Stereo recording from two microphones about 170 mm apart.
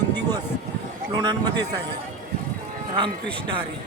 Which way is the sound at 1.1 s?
25° right (ahead or behind).